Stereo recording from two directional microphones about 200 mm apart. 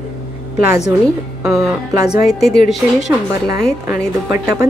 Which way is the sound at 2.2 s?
Centre (ahead or behind).